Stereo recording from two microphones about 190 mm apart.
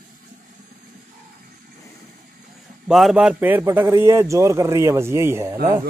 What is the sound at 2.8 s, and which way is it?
A man's voice, centre (ahead or behind).